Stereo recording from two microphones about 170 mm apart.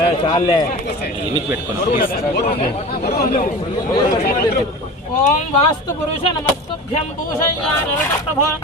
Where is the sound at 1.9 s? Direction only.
60° left (ahead or behind).